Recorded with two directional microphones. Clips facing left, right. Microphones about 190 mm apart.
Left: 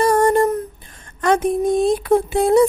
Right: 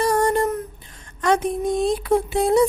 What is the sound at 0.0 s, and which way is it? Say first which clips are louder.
Humming: left 4 dB; 50° left (ahead or behind).